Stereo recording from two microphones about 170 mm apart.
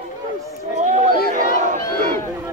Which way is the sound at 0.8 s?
50° right (ahead or behind).